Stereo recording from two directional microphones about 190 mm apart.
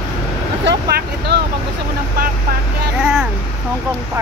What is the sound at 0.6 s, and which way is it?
Speech, 60° right (ahead or behind).